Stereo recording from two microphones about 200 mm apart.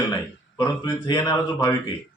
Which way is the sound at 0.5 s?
20° left (ahead or behind).